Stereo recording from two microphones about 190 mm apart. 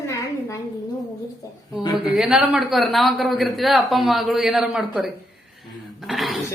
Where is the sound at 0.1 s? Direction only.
15° left (ahead or behind).